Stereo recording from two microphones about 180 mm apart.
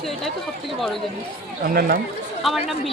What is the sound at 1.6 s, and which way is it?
Speech, 55° right (ahead or behind).